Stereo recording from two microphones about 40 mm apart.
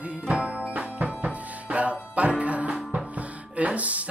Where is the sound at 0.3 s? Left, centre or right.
Right.